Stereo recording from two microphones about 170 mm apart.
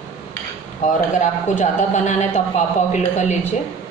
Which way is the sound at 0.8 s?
45° left (ahead or behind).